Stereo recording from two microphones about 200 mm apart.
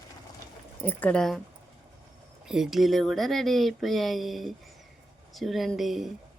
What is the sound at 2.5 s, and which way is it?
Speech, centre (ahead or behind).